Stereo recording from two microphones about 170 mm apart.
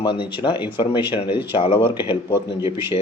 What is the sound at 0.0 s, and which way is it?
Speech, 30° left (ahead or behind).